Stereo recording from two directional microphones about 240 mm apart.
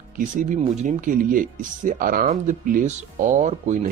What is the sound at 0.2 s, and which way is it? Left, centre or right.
Speech, right.